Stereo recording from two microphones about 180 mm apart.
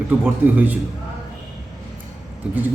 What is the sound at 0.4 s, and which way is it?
Speech, 10° right (ahead or behind).